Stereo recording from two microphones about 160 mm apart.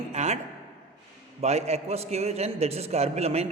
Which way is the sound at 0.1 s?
45° right (ahead or behind).